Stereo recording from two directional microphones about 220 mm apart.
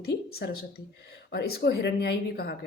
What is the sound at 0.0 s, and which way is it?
A woman's voice, 45° left (ahead or behind).